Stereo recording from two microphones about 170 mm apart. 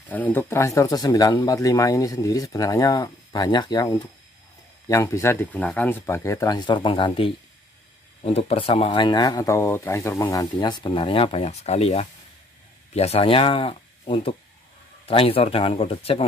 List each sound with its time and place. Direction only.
0.1 s speech: 10° left (ahead or behind); by 16.3 s 35° left (ahead or behind)